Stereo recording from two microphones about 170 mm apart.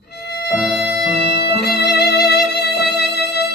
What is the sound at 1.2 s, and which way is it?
Music, 80° left.